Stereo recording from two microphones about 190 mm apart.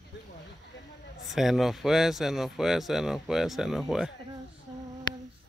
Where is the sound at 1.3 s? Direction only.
Centre (ahead or behind).